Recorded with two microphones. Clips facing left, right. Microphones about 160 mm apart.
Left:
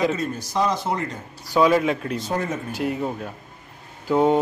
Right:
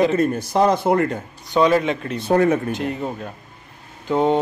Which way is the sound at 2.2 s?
65° right (ahead or behind).